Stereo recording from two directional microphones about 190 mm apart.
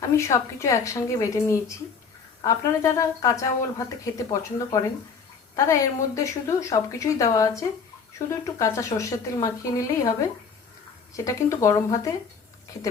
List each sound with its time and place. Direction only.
0.2 s a woman's voice: 15° left (ahead or behind)
11.3 s a woman's voice: 15° left (ahead or behind)